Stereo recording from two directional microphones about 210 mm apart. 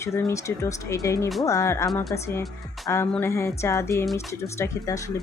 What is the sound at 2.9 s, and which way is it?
Speech, 10° left (ahead or behind).